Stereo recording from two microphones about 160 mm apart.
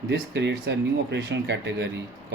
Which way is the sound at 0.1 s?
90° right.